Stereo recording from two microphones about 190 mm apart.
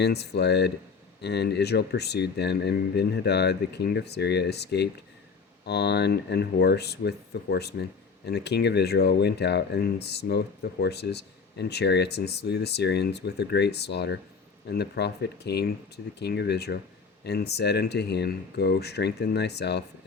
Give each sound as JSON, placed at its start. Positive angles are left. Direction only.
{"t": 0.0, "sound": "speech", "side_deg": 60}